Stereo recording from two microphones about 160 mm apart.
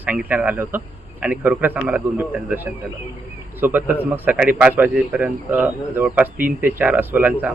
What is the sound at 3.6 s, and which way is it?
A man's voice, 10° right (ahead or behind).